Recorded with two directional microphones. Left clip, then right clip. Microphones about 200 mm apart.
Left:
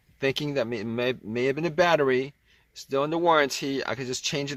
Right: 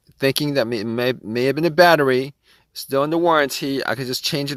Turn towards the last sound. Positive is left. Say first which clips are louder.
# right 6 dB
turn(degrees=-45)  # may be behind; listen again after turning